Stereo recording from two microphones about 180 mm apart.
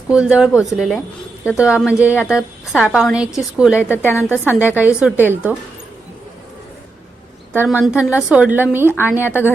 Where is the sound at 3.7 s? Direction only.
10° left (ahead or behind).